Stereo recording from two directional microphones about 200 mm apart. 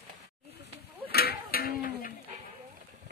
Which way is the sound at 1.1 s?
50° left (ahead or behind).